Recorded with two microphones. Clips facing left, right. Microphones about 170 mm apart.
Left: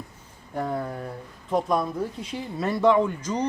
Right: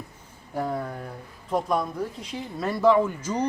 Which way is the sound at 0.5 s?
Centre (ahead or behind).